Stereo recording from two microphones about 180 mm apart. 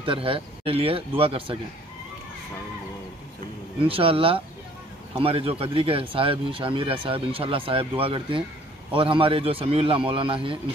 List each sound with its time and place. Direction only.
0.0 s speech: 30° right (ahead or behind)
3.8 s a man's voice: 30° right (ahead or behind)